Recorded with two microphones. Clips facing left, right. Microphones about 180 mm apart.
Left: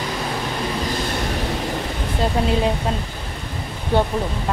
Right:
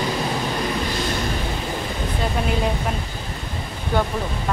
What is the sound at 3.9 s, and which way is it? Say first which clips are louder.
Speech: left 3 dB; 30° left (ahead or behind).